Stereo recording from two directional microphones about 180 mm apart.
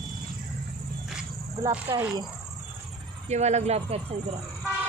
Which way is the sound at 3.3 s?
40° right (ahead or behind).